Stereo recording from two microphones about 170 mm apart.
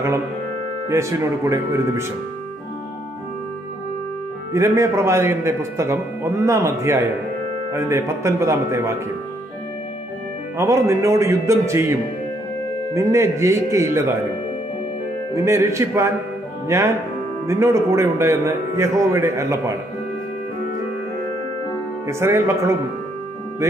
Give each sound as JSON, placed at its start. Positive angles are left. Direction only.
{"t": 0.8, "sound": "a man's voice", "side_deg": -15}
{"t": 4.5, "sound": "a man's voice", "side_deg": -15}
{"t": 10.6, "sound": "a man's voice", "side_deg": -15}
{"t": 15.3, "sound": "a man's voice", "side_deg": -15}
{"t": 22.0, "sound": "a man's voice", "side_deg": -15}